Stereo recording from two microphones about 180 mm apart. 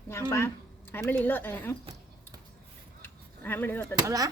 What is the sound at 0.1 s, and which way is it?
Speech, 15° left (ahead or behind).